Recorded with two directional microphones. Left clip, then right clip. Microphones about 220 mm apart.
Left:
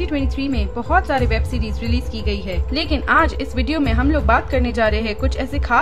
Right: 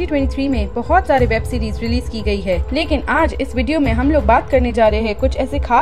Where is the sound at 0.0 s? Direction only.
15° right (ahead or behind).